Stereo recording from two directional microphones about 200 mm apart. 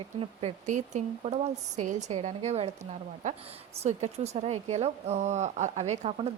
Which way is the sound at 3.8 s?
35° right (ahead or behind).